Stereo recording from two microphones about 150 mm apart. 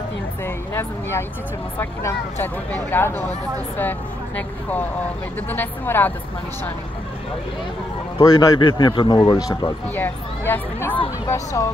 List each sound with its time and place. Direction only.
1.8 s speech: 15° left (ahead or behind)
4.4 s speech: 10° left (ahead or behind)
8.2 s speech: 25° left (ahead or behind)
9.9 s speech: 10° left (ahead or behind)